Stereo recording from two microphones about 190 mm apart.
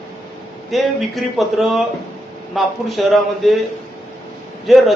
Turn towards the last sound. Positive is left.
turn(degrees=0)  # may be behind; listen again after turning